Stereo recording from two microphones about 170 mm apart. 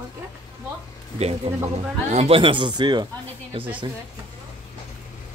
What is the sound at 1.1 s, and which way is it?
Speech, 35° right (ahead or behind).